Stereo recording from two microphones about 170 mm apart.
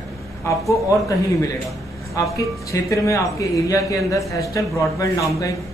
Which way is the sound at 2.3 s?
20° left (ahead or behind).